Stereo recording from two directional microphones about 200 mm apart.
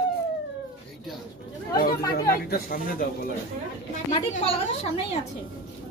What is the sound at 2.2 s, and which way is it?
Speech, 45° left (ahead or behind).